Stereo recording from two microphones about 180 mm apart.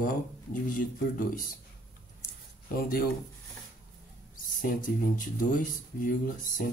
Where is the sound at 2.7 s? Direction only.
55° left (ahead or behind).